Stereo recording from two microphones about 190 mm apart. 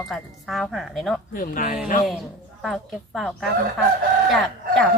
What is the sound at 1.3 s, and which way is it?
Speech, 45° left (ahead or behind).